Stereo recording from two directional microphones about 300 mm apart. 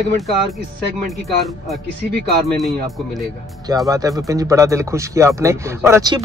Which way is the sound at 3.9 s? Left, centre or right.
Centre.